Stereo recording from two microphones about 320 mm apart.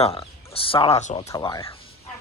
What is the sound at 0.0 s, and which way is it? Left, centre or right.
Speech, centre.